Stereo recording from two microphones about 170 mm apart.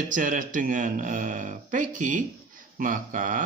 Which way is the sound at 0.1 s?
50° right (ahead or behind).